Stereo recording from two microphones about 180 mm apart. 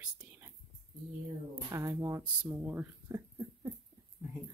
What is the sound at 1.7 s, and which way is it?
Speech, 20° right (ahead or behind).